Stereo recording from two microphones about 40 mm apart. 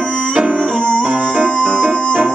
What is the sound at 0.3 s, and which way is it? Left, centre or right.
Music, right.